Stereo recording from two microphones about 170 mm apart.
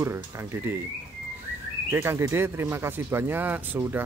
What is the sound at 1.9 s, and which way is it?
Speech, 15° right (ahead or behind).